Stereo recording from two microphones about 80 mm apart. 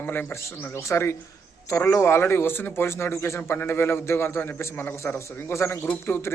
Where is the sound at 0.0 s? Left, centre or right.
Left.